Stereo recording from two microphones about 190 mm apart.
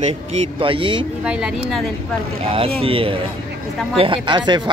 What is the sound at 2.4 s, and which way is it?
Speech, 30° right (ahead or behind).